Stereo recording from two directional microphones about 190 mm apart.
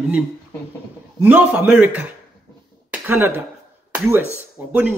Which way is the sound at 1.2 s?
10° right (ahead or behind).